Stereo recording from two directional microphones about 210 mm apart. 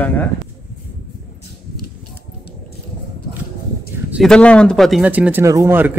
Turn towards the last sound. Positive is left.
turn(degrees=-10)  # may be behind; listen again after turning